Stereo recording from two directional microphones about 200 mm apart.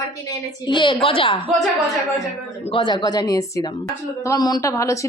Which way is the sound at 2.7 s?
25° left (ahead or behind).